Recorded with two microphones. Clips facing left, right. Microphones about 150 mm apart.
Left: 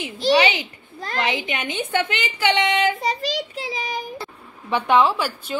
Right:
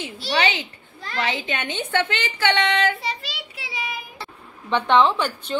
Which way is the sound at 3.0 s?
40° left (ahead or behind).